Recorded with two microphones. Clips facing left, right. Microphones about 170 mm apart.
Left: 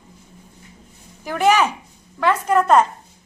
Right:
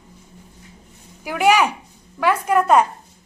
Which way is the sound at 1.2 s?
15° right (ahead or behind).